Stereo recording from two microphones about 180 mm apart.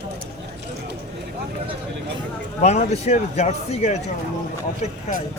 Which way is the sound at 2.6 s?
40° left (ahead or behind).